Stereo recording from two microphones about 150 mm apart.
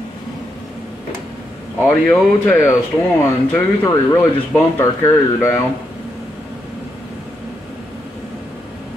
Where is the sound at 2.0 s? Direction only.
15° left (ahead or behind).